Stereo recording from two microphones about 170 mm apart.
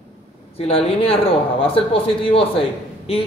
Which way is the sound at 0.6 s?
35° left (ahead or behind).